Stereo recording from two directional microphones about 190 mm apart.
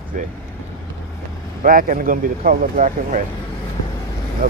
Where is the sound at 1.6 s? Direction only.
45° right (ahead or behind).